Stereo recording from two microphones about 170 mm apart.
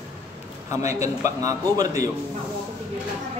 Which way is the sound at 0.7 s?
15° right (ahead or behind).